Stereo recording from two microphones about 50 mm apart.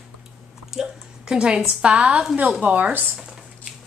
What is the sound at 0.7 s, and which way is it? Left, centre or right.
A woman's voice, centre.